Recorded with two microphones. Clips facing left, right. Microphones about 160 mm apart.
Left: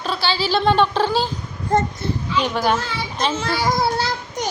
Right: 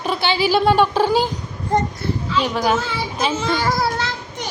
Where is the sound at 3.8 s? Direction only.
35° left (ahead or behind).